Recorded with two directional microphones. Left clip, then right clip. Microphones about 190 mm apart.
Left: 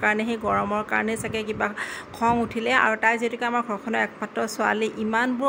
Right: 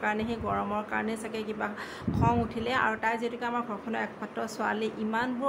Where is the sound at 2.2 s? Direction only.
30° left (ahead or behind).